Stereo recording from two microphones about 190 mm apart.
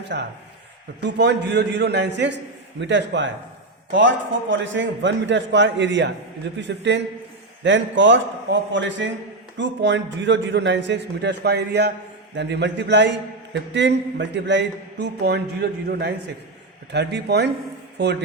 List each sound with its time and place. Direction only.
0.0 s a man's voice: 65° right (ahead or behind)